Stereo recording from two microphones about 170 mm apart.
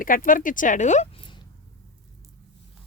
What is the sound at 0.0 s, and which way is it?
Speech, 55° left (ahead or behind).